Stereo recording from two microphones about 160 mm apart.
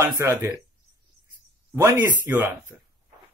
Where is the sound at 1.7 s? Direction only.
15° right (ahead or behind).